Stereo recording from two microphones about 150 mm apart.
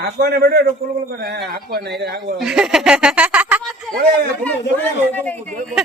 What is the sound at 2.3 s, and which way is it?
Speech, 5° right (ahead or behind).